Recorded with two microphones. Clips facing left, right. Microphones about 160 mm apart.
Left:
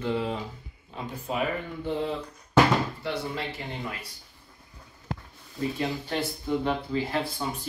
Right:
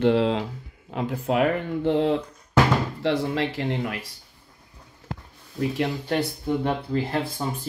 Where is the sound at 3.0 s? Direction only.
90° right; by 4.0 s 75° right (ahead or behind).